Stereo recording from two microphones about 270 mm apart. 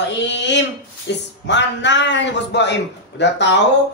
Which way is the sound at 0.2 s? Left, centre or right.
Left.